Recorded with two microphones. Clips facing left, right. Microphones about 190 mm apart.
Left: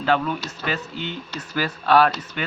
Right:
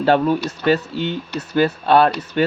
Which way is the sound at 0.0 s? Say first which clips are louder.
Right 6 dB; 35° right (ahead or behind).